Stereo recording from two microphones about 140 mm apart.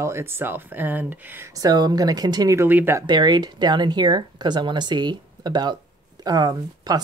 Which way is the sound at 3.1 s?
30° right (ahead or behind).